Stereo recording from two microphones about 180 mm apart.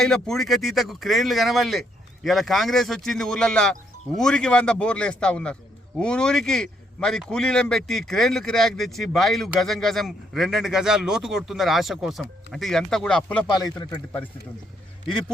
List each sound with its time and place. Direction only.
0.0 s a man's voice: 5° left (ahead or behind)
13.5 s a man's voice: 20° left (ahead or behind)